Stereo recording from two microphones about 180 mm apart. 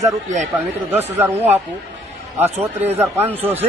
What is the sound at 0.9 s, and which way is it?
A man's voice, 10° right (ahead or behind).